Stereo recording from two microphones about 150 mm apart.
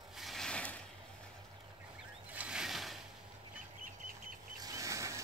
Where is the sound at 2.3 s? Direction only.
5° right (ahead or behind).